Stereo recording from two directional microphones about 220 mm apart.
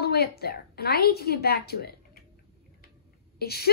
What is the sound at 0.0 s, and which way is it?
A woman's voice, 45° left (ahead or behind).